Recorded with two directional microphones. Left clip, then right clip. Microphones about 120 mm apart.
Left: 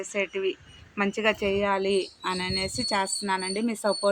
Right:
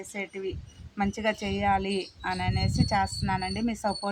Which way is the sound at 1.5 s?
90° right.